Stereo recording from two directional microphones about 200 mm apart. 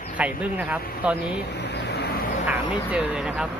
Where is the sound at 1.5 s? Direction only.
55° left (ahead or behind).